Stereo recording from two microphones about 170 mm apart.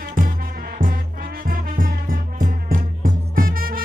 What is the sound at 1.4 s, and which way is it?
Music, 55° right (ahead or behind).